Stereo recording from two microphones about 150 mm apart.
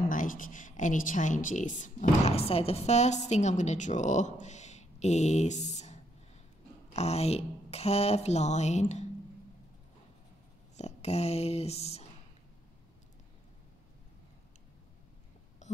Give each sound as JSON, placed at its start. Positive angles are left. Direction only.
{"t": 0.1, "sound": "a woman's voice", "side_deg": 60}
{"t": 6.9, "sound": "a woman's voice", "side_deg": 45}
{"t": 10.8, "sound": "speech", "side_deg": 45}